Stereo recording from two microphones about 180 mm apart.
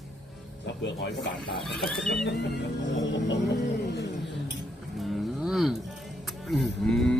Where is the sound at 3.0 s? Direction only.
90° left.